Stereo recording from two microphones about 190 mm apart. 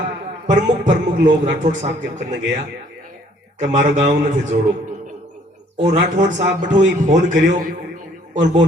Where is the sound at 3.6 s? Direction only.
40° right (ahead or behind).